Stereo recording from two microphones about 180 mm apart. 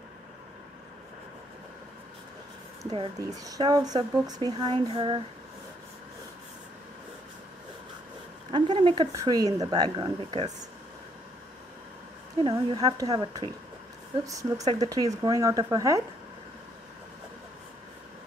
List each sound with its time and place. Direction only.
2.8 s speech: 20° right (ahead or behind)
8.5 s speech: 25° right (ahead or behind)
12.4 s speech: 25° right (ahead or behind)